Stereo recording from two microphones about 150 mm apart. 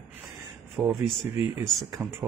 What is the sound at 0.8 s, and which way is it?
Speech, centre (ahead or behind).